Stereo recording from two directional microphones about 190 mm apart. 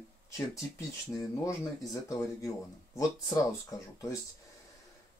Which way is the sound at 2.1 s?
15° left (ahead or behind).